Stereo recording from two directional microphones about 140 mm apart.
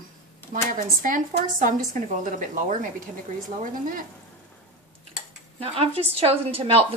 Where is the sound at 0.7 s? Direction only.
75° right (ahead or behind).